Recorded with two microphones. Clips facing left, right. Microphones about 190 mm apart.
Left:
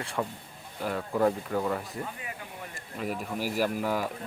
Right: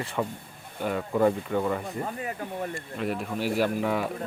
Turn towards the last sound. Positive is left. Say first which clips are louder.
# right 2 dB
turn(degrees=5)  # may be behind; listen again after turning